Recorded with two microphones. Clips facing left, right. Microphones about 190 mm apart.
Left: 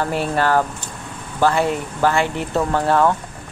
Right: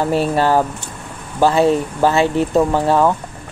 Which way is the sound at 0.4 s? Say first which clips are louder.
Right 3 dB; 15° right (ahead or behind).